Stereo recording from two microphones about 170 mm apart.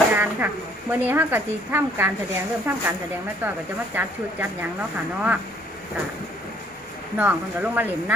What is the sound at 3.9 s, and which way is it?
Speech, 10° right (ahead or behind).